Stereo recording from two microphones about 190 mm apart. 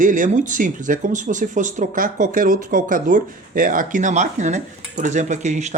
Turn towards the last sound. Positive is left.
turn(degrees=-40)  # may be behind; listen again after turning